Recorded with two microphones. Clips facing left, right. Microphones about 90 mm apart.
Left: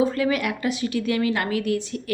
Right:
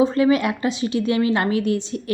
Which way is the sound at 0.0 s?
25° right (ahead or behind).